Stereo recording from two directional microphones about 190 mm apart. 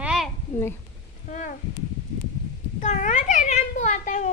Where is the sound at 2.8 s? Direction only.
40° left (ahead or behind).